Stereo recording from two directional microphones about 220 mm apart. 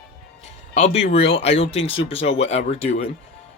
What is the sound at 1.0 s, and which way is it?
Speech, 25° left (ahead or behind).